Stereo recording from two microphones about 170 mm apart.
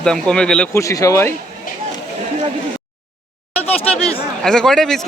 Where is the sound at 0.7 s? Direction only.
20° left (ahead or behind).